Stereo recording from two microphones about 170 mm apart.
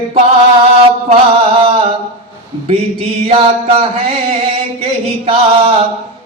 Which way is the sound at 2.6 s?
35° right (ahead or behind).